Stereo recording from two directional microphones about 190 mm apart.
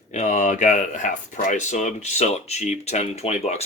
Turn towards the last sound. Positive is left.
turn(degrees=35)  # may be behind; listen again after turning